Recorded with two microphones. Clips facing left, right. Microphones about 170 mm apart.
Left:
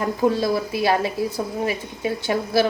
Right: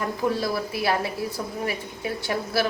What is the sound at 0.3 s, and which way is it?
A woman's voice, 20° left (ahead or behind).